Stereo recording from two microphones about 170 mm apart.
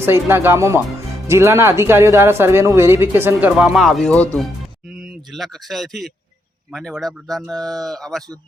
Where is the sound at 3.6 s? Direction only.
Centre (ahead or behind).